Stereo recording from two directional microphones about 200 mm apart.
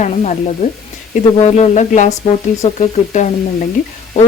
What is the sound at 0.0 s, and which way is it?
Speech, 35° left (ahead or behind).